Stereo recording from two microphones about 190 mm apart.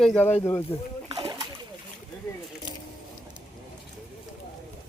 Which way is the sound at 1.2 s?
20° right (ahead or behind).